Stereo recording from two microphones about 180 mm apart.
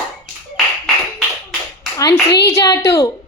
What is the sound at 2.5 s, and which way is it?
Speech, 20° left (ahead or behind).